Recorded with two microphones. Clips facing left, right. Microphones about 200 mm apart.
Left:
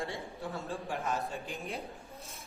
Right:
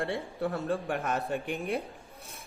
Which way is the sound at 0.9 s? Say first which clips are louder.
Right 4 dB; 65° right (ahead or behind).